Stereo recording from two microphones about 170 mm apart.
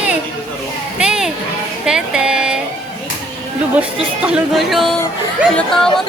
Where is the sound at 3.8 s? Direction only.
5° right (ahead or behind).